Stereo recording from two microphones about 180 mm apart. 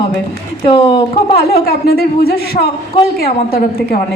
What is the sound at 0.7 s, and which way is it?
Speech, 30° left (ahead or behind).